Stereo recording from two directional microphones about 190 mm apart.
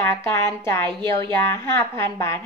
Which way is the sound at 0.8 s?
25° right (ahead or behind).